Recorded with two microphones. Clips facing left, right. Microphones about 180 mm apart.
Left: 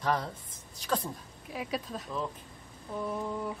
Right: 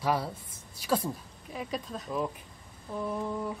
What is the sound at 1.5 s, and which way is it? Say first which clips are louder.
A woman's voice: even; 5° left (ahead or behind).